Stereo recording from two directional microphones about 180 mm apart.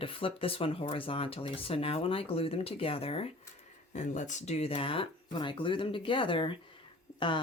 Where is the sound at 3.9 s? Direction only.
45° left (ahead or behind).